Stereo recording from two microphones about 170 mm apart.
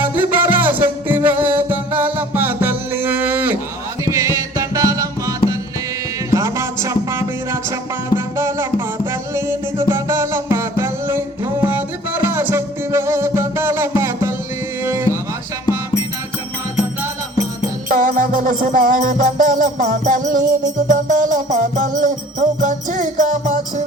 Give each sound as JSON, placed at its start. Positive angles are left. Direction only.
{"t": 0.0, "sound": "music", "side_deg": -10}
{"t": 6.3, "sound": "music", "side_deg": -15}
{"t": 17.8, "sound": "music", "side_deg": -50}